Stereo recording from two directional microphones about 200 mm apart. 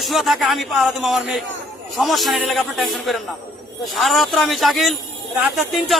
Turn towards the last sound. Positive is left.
turn(degrees=0)  # may be behind; listen again after turning